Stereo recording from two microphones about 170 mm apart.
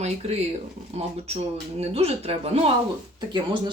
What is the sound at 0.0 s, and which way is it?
Speech, 40° right (ahead or behind).